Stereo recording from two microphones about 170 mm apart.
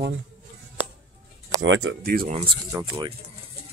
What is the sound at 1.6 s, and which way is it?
Speech, 90° right.